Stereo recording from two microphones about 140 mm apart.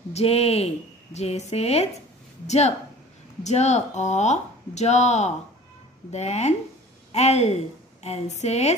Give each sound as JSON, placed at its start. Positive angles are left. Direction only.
{"t": 0.1, "sound": "speech", "side_deg": 45}